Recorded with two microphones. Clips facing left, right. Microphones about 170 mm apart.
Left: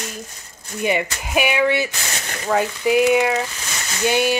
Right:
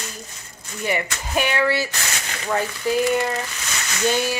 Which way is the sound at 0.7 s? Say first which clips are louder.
Left 4 dB; 20° left (ahead or behind).